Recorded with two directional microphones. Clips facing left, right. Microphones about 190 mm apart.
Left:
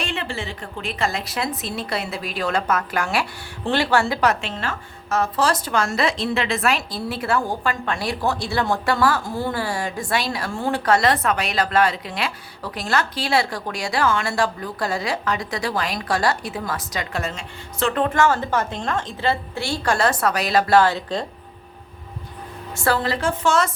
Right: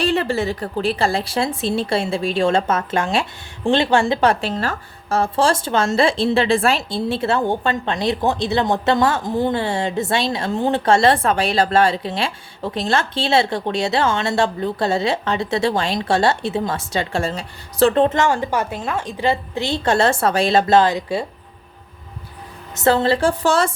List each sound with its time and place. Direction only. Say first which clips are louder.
0.0 s a woman's voice: right 9 dB; 40° right (ahead or behind); by 21.2 s 10° right (ahead or behind)
22.7 s a woman's voice: right 6 dB; 20° right (ahead or behind)